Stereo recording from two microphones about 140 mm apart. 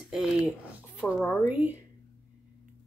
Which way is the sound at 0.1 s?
Centre (ahead or behind).